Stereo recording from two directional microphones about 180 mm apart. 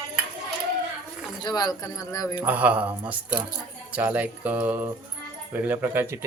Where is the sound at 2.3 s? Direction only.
10° right (ahead or behind).